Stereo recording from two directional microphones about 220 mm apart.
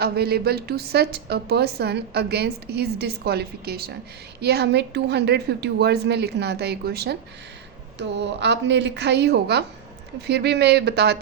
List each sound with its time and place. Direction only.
0.0 s a woman's voice: 45° right (ahead or behind)